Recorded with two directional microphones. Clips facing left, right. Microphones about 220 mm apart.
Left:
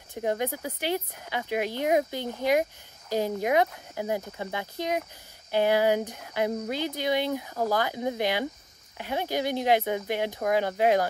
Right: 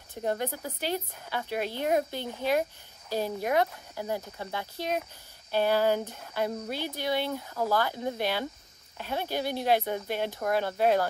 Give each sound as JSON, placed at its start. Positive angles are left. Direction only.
{"t": 0.2, "sound": "speech", "side_deg": 15}